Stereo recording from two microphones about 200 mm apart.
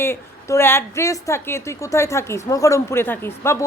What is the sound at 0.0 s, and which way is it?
A woman's voice, 15° left (ahead or behind).